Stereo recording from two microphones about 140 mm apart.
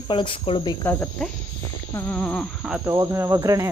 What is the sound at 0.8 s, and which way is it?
Speech, 10° left (ahead or behind).